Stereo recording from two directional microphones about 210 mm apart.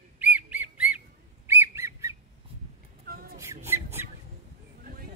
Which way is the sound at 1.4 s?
10° right (ahead or behind).